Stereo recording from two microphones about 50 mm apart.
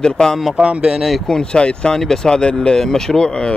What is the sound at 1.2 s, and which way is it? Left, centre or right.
Speech, centre.